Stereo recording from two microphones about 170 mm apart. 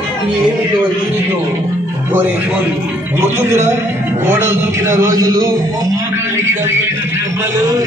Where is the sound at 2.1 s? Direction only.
10° right (ahead or behind).